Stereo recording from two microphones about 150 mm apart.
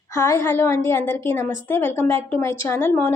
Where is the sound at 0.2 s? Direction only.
20° left (ahead or behind).